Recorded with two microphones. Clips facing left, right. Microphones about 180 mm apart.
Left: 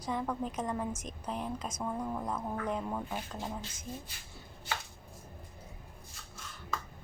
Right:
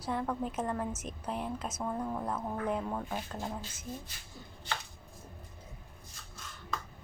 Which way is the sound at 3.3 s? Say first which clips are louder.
Right 1 dB; 5° right (ahead or behind).